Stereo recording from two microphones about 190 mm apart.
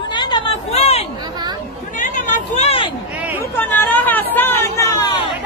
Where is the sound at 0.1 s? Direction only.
25° left (ahead or behind).